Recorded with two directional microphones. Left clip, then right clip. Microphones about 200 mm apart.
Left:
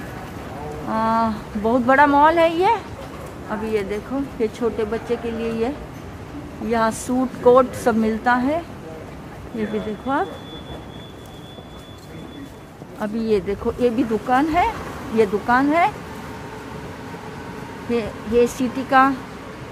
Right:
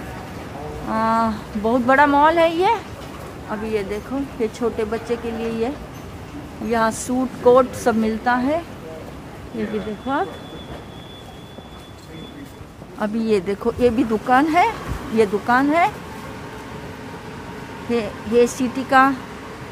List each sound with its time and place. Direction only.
0.8 s speech: 10° right (ahead or behind)
6.7 s speech: 5° right (ahead or behind)
9.6 s speech: 5° right (ahead or behind)
13.0 s speech: 20° right (ahead or behind)
15.1 s speech: 10° right (ahead or behind)
17.8 s speech: 15° right (ahead or behind)